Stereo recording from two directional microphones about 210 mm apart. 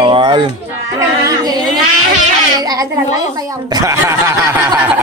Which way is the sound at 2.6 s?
15° right (ahead or behind).